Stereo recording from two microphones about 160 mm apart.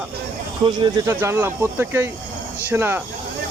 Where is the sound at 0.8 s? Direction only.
25° right (ahead or behind).